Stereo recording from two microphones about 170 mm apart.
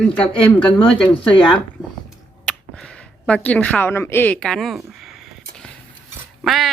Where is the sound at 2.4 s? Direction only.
5° left (ahead or behind).